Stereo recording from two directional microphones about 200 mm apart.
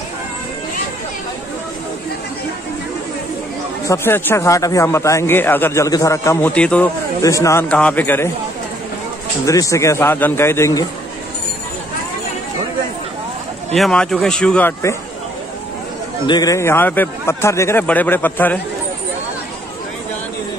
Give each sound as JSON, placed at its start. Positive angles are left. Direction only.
{"t": 3.8, "sound": "speech", "side_deg": 15}
{"t": 9.5, "sound": "speech", "side_deg": 15}
{"t": 13.7, "sound": "speech", "side_deg": 0}
{"t": 16.3, "sound": "speech", "side_deg": 20}